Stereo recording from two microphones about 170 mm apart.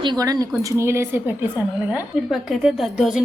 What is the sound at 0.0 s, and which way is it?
A man's voice, 25° right (ahead or behind).